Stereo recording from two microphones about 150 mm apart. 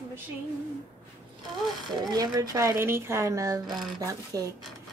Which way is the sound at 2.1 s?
25° right (ahead or behind).